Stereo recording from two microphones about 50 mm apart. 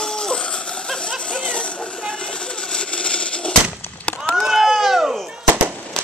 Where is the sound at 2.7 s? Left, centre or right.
Centre.